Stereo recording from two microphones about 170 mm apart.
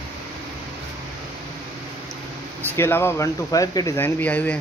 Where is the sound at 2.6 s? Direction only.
10° left (ahead or behind).